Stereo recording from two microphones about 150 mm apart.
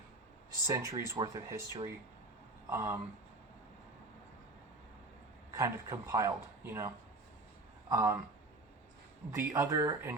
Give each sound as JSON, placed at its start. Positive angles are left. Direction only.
{"t": 0.7, "sound": "speech", "side_deg": -20}
{"t": 5.5, "sound": "speech", "side_deg": -20}
{"t": 9.3, "sound": "speech", "side_deg": -15}